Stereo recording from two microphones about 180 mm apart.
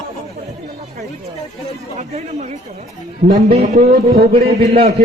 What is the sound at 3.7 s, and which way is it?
Speech, 55° right (ahead or behind).